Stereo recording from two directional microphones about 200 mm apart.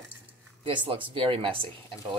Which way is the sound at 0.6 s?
25° right (ahead or behind).